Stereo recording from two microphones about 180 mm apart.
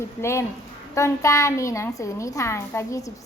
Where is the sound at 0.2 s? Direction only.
15° left (ahead or behind).